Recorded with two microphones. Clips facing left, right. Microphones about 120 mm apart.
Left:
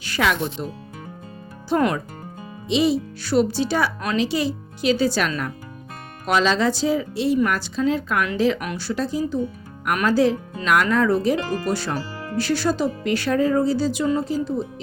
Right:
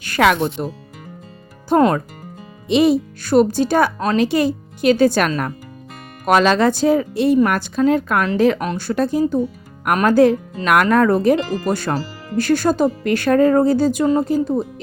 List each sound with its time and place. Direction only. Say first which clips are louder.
0.0 s speech: right 6 dB; 55° right (ahead or behind)
1.7 s speech: right 6 dB; 50° right (ahead or behind)